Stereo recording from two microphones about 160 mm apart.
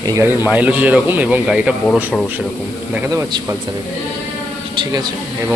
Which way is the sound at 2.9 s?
10° right (ahead or behind).